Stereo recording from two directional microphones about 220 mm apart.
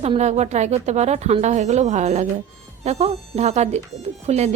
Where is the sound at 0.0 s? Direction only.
30° right (ahead or behind).